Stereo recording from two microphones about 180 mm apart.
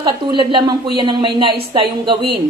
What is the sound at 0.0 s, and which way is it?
A woman's voice, 25° right (ahead or behind).